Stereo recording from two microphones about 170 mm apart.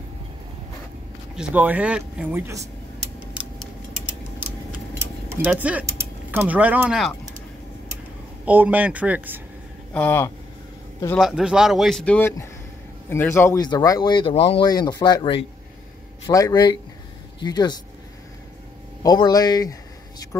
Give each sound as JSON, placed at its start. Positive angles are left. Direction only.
{"t": 1.3, "sound": "speech", "side_deg": -5}
{"t": 5.3, "sound": "speech", "side_deg": -10}
{"t": 8.5, "sound": "speech", "side_deg": -10}
{"t": 9.9, "sound": "speech", "side_deg": 10}
{"t": 11.1, "sound": "a man's voice", "side_deg": 0}
{"t": 19.0, "sound": "speech", "side_deg": 25}